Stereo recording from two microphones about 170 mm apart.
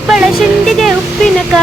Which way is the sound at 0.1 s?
Centre (ahead or behind).